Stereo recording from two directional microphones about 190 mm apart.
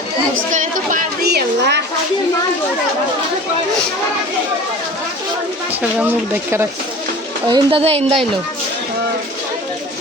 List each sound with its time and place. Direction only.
0.5 s a sound: 45° right (ahead or behind); by 1.8 s 60° right (ahead or behind)
6.0 s speech: 10° right (ahead or behind)
7.4 s speech: 25° right (ahead or behind)